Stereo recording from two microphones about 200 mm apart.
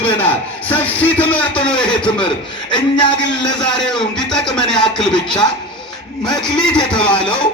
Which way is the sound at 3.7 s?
Centre (ahead or behind).